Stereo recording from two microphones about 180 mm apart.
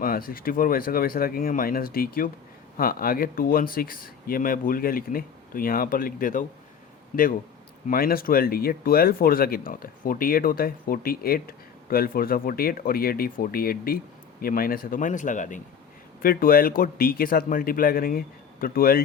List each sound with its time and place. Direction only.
0.0 s a man's voice: 55° left (ahead or behind)
7.9 s speech: 55° left (ahead or behind)